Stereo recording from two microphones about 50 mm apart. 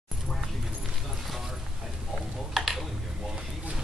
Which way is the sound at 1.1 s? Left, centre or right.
Centre.